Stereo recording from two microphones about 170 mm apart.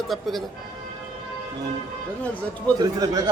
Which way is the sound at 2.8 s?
20° right (ahead or behind).